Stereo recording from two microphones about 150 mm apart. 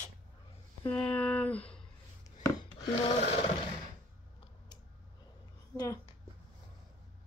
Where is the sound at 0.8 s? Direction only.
5° left (ahead or behind).